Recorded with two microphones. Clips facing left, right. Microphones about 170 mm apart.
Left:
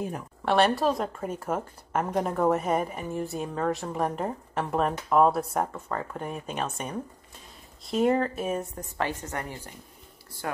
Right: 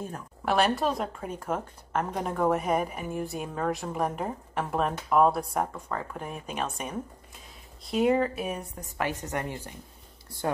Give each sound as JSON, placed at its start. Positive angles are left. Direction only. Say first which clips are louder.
{"t": 0.5, "sound": "a woman's voice", "louder": "left 2 dB", "side_deg": 0}
{"t": 8.9, "sound": "a woman's voice", "louder": "even", "side_deg": -15}
{"t": 10.4, "sound": "speech", "louder": "right 4 dB", "side_deg": -30}